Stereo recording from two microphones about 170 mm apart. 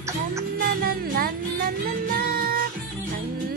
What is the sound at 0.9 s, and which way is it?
Music, 60° right (ahead or behind).